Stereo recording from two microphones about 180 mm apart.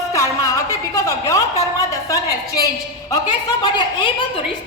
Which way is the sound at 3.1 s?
25° left (ahead or behind).